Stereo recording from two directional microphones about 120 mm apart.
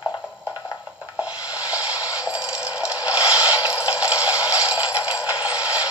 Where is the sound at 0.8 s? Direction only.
10° right (ahead or behind).